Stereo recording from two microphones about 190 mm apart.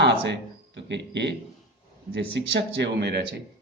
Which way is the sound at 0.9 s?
65° right (ahead or behind).